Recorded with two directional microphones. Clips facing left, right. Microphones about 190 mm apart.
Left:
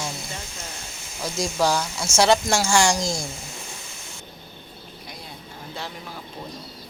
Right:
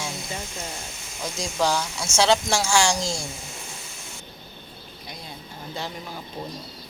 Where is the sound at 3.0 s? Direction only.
15° left (ahead or behind).